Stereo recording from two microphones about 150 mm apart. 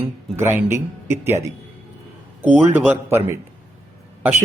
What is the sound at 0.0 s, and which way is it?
A man's voice, 15° right (ahead or behind).